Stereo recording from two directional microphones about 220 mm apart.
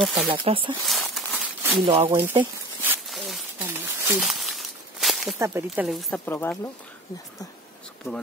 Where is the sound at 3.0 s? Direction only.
Centre (ahead or behind).